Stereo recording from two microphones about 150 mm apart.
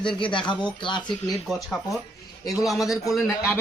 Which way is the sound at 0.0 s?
30° left (ahead or behind).